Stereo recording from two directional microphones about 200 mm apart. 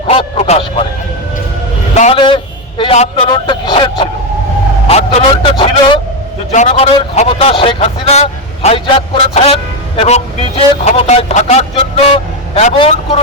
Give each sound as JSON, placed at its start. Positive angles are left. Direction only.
{"t": 0.1, "sound": "speech", "side_deg": 30}
{"t": 2.0, "sound": "a man's voice", "side_deg": 30}
{"t": 4.9, "sound": "vehicle", "side_deg": 30}
{"t": 6.5, "sound": "a man's voice", "side_deg": 35}